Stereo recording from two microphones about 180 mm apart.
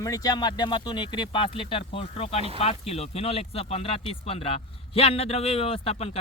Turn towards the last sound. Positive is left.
turn(degrees=35)  # may be behind; listen again after turning